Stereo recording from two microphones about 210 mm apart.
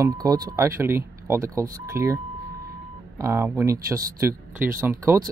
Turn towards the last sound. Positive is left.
turn(degrees=-15)  # may be behind; listen again after turning